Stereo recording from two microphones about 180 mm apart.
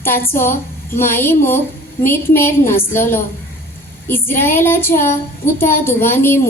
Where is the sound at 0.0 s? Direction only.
10° left (ahead or behind).